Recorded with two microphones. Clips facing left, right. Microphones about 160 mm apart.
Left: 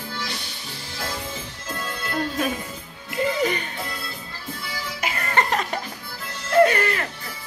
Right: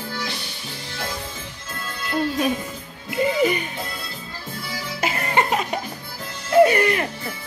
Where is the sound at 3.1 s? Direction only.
10° right (ahead or behind).